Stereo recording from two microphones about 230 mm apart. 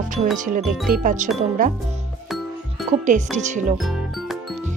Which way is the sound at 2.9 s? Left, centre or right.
Right.